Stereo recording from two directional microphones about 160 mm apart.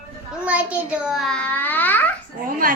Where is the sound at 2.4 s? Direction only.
60° right (ahead or behind).